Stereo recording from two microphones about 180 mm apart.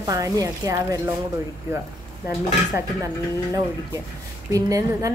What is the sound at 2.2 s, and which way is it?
Dishes, 15° right (ahead or behind).